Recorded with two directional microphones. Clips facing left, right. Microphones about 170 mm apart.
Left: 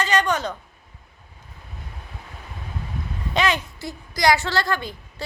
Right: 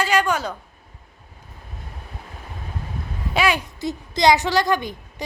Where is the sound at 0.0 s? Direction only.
10° right (ahead or behind).